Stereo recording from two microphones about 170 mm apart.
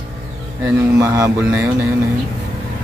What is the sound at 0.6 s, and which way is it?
Speech, 15° right (ahead or behind).